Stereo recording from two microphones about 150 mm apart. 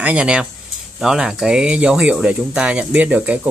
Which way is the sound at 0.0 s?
10° right (ahead or behind).